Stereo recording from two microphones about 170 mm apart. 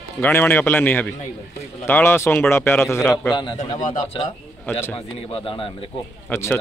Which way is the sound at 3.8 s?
40° left (ahead or behind).